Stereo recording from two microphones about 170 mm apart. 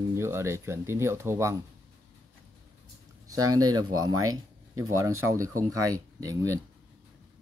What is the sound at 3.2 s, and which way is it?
Speech, 20° right (ahead or behind).